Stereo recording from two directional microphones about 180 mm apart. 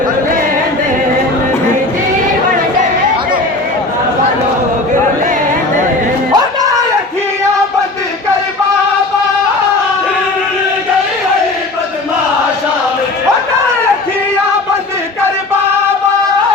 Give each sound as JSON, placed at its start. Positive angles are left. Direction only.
{"t": 6.3, "sound": "music", "side_deg": -20}